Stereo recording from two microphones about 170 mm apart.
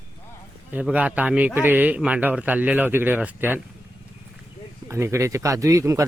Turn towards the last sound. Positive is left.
turn(degrees=-20)  # may be behind; listen again after turning